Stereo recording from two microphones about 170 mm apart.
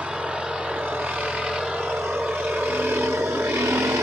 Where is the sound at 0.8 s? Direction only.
5° right (ahead or behind).